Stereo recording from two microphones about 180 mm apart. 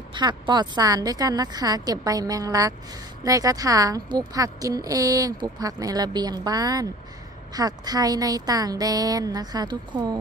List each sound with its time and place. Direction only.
0.1 s a woman's voice: 25° right (ahead or behind)